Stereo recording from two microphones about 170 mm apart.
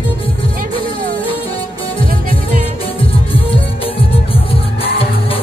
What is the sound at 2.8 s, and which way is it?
Music, 35° left (ahead or behind).